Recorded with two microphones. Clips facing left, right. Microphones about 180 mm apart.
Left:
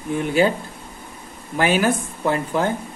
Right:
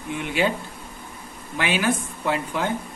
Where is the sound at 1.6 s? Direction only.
45° left (ahead or behind).